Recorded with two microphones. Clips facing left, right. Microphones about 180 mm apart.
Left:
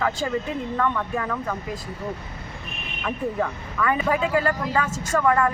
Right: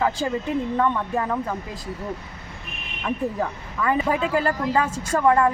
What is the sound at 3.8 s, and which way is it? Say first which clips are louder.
Speech: even; 30° right (ahead or behind).